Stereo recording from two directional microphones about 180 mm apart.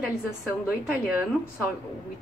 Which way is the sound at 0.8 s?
10° right (ahead or behind).